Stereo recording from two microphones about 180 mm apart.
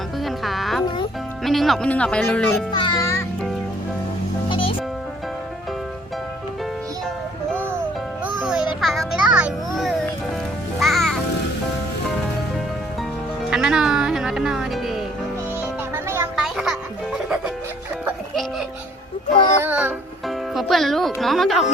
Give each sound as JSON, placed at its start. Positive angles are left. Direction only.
{"t": 0.3, "sound": "music", "side_deg": 0}
{"t": 1.5, "sound": "speech", "side_deg": 0}
{"t": 2.7, "sound": "music", "side_deg": 25}
{"t": 4.4, "sound": "music", "side_deg": 30}
{"t": 7.5, "sound": "music", "side_deg": -10}
{"t": 8.8, "sound": "a sound", "side_deg": 0}
{"t": 10.8, "sound": "music", "side_deg": 0}
{"t": 13.5, "sound": "music", "side_deg": -5}
{"t": 16.0, "sound": "music", "side_deg": -15}
{"t": 16.3, "sound": "music", "side_deg": 0}
{"t": 19.6, "sound": "music", "side_deg": -5}
{"t": 20.6, "sound": "speech", "side_deg": 0}